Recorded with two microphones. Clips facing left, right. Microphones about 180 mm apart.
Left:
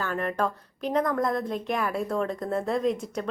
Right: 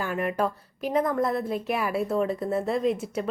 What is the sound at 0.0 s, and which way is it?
A woman's voice, 10° right (ahead or behind).